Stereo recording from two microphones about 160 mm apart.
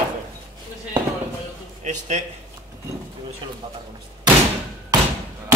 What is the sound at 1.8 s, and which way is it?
Speech, 45° right (ahead or behind).